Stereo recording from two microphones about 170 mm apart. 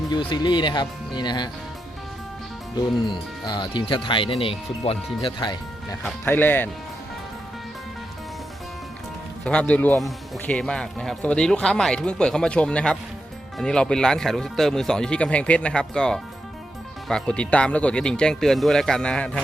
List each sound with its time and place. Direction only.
0.1 s speech: 25° left (ahead or behind)
2.7 s speech: 25° left (ahead or behind)
6.0 s speech: 10° left (ahead or behind)
9.4 s speech: 5° left (ahead or behind)